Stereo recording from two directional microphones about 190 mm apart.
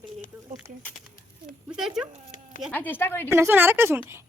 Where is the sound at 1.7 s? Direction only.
Centre (ahead or behind).